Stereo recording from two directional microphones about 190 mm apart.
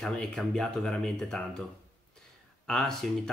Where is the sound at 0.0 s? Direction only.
5° left (ahead or behind).